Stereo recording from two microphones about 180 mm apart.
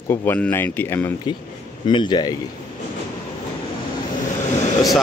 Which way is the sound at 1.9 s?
25° left (ahead or behind).